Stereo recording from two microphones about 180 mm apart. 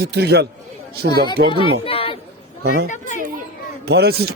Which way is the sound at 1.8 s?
30° left (ahead or behind).